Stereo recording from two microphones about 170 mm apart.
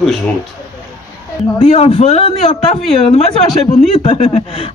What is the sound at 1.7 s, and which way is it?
Speech, 35° left (ahead or behind).